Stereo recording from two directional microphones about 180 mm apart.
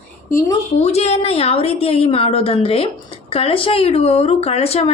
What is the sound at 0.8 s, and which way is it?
A woman's voice, 35° left (ahead or behind).